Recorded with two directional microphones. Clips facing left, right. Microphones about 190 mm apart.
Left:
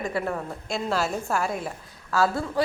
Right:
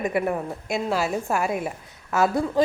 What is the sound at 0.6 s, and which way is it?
Speech, 5° right (ahead or behind).